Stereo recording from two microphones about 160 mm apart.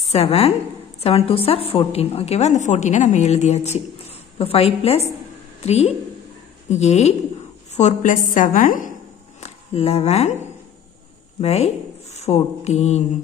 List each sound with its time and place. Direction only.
0.0 s a woman's voice: 40° left (ahead or behind); by 8.9 s 55° left (ahead or behind)
9.4 s speech: 40° left (ahead or behind)
11.4 s speech: 45° left (ahead or behind)